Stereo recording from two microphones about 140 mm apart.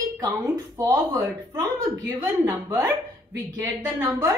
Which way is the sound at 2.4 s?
20° right (ahead or behind).